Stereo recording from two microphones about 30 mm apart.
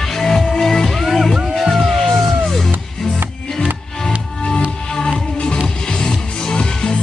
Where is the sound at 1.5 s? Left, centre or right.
Centre.